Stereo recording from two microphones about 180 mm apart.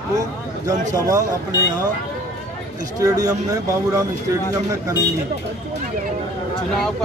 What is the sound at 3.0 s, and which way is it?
Speech, 20° right (ahead or behind).